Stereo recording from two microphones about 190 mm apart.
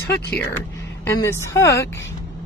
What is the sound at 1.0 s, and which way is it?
Speech, 15° left (ahead or behind).